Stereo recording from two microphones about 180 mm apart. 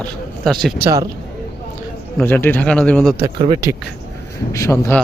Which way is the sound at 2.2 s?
10° left (ahead or behind).